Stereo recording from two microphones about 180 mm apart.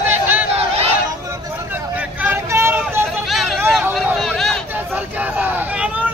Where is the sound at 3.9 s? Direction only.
Centre (ahead or behind).